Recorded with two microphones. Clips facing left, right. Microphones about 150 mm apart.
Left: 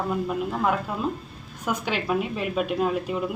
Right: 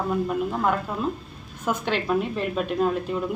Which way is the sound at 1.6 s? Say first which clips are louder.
Right 2 dB; 10° left (ahead or behind).